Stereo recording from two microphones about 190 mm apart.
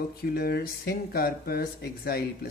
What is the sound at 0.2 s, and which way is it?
Speech, 55° left (ahead or behind).